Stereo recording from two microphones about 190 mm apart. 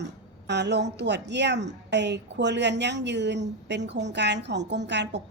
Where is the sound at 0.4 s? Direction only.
65° right (ahead or behind).